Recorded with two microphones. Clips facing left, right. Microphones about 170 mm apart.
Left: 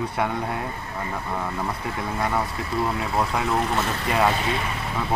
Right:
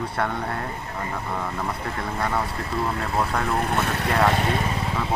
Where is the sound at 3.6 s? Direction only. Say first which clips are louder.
Right 1 dB; 60° right (ahead or behind).